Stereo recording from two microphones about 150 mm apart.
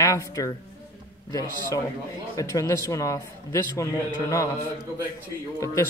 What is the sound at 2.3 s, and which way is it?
Speech, 20° left (ahead or behind).